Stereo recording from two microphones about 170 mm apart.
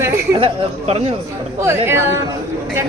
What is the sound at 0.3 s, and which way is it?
Speech, 35° right (ahead or behind).